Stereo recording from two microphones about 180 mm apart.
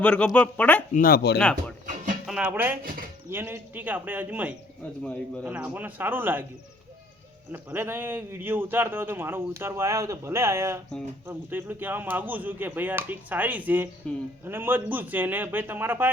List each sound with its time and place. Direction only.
0.0 s speech: 5° left (ahead or behind)
0.9 s speech: 55° left (ahead or behind)
1.4 s speech: 5° left (ahead or behind)
2.2 s a man's voice: 5° right (ahead or behind)
7.5 s a man's voice: 10° right (ahead or behind)
14.0 s speech: 5° left (ahead or behind)
14.4 s a man's voice: 10° right (ahead or behind)